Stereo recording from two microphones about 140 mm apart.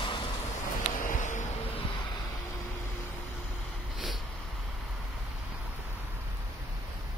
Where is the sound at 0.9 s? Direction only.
70° left (ahead or behind).